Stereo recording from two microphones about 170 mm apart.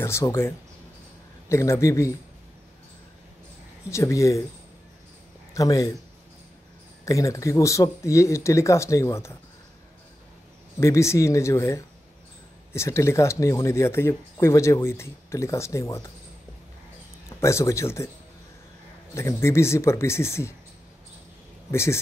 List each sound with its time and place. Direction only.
0.0 s speech: 15° left (ahead or behind)
3.9 s speech: 15° left (ahead or behind)
5.5 s speech: 20° left (ahead or behind)
7.1 s speech: 20° left (ahead or behind)
10.8 s speech: 15° left (ahead or behind)
17.4 s speech: 15° left (ahead or behind)
19.1 s speech: 15° left (ahead or behind)
21.6 s speech: 15° left (ahead or behind)